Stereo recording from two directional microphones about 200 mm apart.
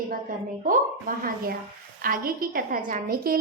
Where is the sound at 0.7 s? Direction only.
45° right (ahead or behind).